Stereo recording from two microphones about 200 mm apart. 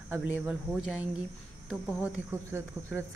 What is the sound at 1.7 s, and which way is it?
Speech, 5° right (ahead or behind).